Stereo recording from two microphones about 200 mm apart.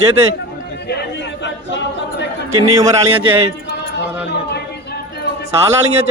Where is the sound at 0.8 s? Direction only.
55° left (ahead or behind).